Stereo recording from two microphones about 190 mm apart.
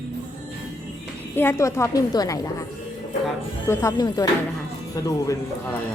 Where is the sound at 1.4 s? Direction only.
15° left (ahead or behind).